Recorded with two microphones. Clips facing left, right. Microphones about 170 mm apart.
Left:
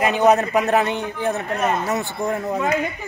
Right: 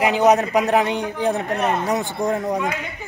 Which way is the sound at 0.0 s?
15° right (ahead or behind).